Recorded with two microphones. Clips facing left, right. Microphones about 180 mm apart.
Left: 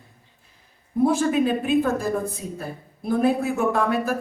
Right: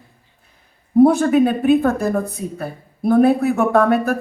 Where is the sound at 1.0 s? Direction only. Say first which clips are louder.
Right 7 dB; 60° right (ahead or behind).